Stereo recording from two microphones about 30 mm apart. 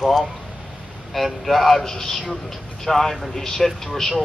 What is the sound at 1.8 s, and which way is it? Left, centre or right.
Speech, centre.